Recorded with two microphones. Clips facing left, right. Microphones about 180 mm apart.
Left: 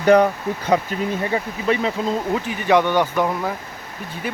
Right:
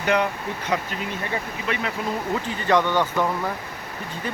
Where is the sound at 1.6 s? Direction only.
35° left (ahead or behind).